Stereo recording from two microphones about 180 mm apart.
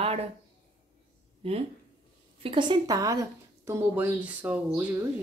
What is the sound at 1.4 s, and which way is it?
Speech, 30° right (ahead or behind).